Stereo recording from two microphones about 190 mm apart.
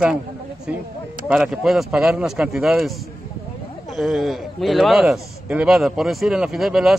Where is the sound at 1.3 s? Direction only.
5° right (ahead or behind).